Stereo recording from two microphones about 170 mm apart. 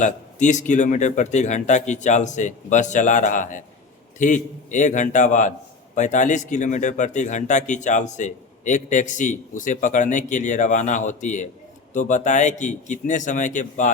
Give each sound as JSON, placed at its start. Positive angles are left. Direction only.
{"t": 0.0, "sound": "a man's voice", "side_deg": 45}